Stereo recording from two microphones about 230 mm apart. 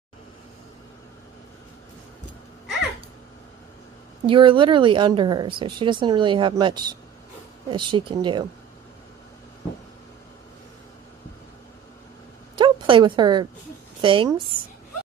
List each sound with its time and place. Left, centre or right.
4.3 s a woman's voice: right
12.5 s a sound: right
14.0 s a woman's voice: right